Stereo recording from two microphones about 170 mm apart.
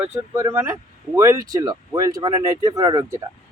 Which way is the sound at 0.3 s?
15° right (ahead or behind).